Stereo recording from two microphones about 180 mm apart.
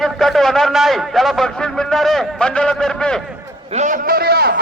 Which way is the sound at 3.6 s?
40° right (ahead or behind).